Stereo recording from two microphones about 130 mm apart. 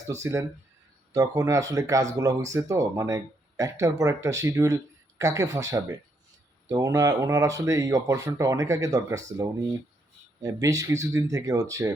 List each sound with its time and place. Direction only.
0.1 s speech: 25° right (ahead or behind)